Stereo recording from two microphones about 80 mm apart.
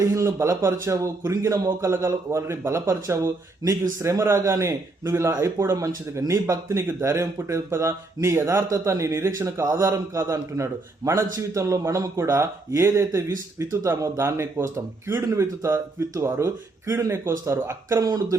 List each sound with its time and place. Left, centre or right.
0.0 s speech: right
18.0 s speech: right